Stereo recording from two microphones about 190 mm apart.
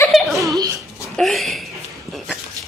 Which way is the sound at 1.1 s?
Centre (ahead or behind).